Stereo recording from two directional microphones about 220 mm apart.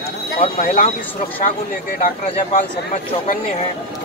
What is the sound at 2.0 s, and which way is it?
Speech, 35° left (ahead or behind).